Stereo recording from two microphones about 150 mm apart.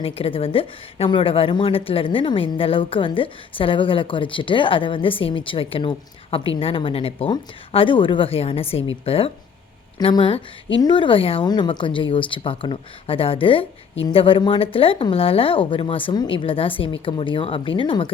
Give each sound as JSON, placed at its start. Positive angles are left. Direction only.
{"t": 0.0, "sound": "a woman's voice", "side_deg": 40}